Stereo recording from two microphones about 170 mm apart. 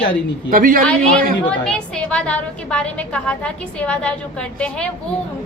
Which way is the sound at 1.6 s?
5° left (ahead or behind).